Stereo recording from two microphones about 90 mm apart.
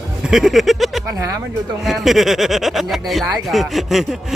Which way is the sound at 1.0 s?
40° right (ahead or behind).